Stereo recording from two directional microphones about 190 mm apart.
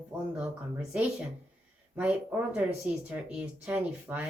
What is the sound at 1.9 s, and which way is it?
Speech, 5° right (ahead or behind).